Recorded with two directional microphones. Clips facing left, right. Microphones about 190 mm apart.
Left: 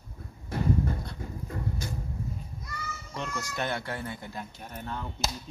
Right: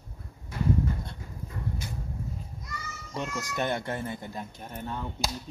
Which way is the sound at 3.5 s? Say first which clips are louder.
Right 4 dB; 20° right (ahead or behind).